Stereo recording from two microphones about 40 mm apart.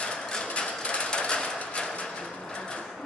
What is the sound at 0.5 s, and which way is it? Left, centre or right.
Hammer, left.